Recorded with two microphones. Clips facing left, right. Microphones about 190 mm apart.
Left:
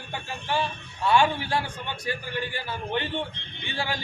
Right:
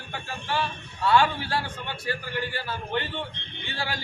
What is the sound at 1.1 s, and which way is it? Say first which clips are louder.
A man's voice: even; 15° left (ahead or behind).